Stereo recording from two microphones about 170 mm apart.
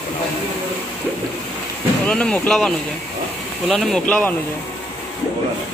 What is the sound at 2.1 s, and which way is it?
Speech, 5° left (ahead or behind).